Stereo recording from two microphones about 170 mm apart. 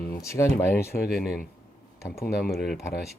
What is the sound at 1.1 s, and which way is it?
Speech, centre (ahead or behind).